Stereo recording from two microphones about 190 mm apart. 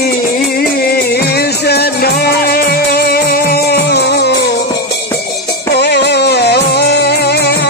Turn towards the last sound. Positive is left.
turn(degrees=60)  # may be behind; listen again after turning